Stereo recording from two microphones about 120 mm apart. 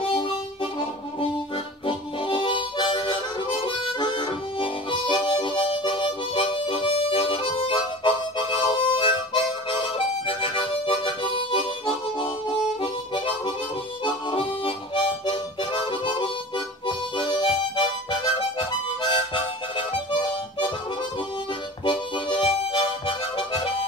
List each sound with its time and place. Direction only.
1.9 s harmonica: 45° left (ahead or behind)
14.0 s harmonica: 45° left (ahead or behind)
21.8 s harmonica: 45° left (ahead or behind)